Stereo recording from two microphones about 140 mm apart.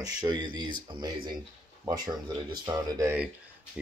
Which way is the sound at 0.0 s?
25° right (ahead or behind).